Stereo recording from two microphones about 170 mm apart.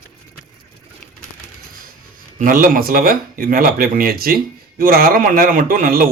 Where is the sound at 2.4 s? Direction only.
50° right (ahead or behind).